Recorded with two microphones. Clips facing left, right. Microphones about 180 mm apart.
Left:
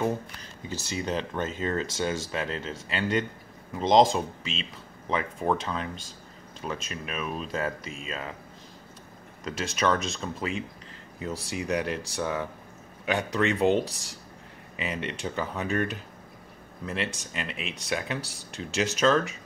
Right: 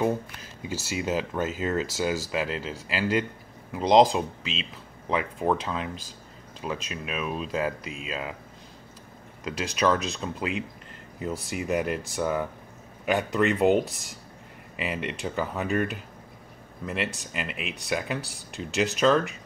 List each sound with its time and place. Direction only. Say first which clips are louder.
0.0 s speech: right 2 dB; 5° right (ahead or behind)
9.4 s speech: right 2 dB; centre (ahead or behind)